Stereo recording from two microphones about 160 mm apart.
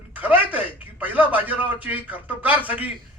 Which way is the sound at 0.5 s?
10° right (ahead or behind).